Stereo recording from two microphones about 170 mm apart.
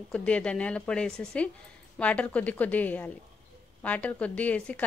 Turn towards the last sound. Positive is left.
turn(degrees=10)  # may be behind; listen again after turning